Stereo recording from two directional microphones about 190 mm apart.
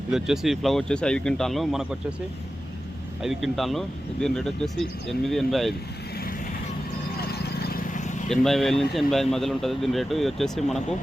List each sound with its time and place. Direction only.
0.1 s speech: centre (ahead or behind)
3.2 s speech: centre (ahead or behind)
7.2 s vehicle: 55° left (ahead or behind); by 8.1 s 40° left (ahead or behind)
8.3 s speech: centre (ahead or behind)